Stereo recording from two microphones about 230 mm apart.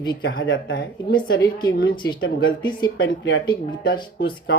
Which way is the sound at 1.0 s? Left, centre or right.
Left.